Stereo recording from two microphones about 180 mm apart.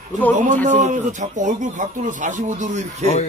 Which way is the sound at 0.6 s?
40° right (ahead or behind).